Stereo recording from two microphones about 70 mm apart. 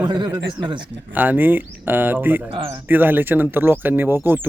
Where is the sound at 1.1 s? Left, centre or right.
Right.